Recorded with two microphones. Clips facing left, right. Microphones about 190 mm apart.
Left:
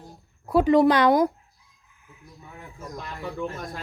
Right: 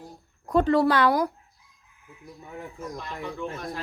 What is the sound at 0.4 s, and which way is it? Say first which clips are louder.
Speech: left 3 dB; 10° left (ahead or behind).